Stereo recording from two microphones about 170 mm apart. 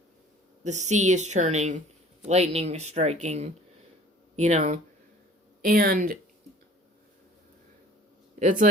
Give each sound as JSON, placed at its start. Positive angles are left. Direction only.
{"t": 0.6, "sound": "speech", "side_deg": -45}
{"t": 5.6, "sound": "speech", "side_deg": -60}
{"t": 8.4, "sound": "speech", "side_deg": -45}